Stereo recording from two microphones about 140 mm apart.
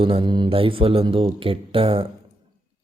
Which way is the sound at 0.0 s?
40° right (ahead or behind).